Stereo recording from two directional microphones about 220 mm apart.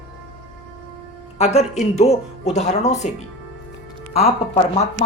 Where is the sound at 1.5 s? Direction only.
30° left (ahead or behind).